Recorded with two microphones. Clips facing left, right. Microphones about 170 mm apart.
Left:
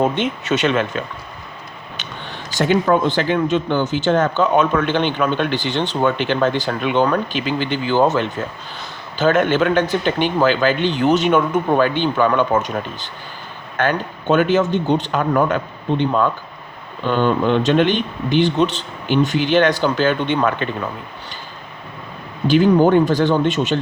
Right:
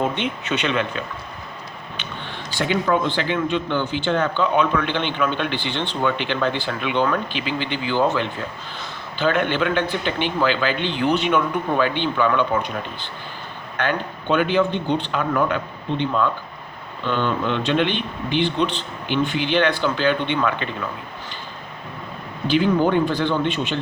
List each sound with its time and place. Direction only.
0.0 s a man's voice: 40° left (ahead or behind)
2.0 s a sound: 40° left (ahead or behind)
2.6 s a man's voice: 45° left (ahead or behind)
22.4 s a man's voice: 40° left (ahead or behind)